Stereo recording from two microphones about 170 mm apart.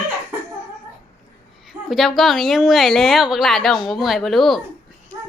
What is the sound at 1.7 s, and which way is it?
A woman's voice, centre (ahead or behind).